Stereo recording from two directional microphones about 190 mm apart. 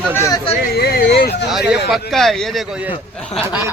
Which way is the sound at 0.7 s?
55° left (ahead or behind).